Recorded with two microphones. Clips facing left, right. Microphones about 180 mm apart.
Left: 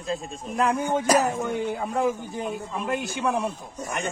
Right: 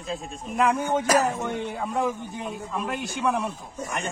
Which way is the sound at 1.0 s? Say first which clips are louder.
Left 1 dB; 15° left (ahead or behind).